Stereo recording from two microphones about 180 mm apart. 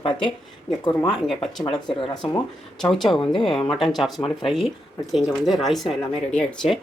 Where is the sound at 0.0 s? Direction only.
30° left (ahead or behind).